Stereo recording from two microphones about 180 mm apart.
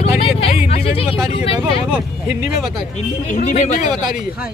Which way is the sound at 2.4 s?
Centre (ahead or behind).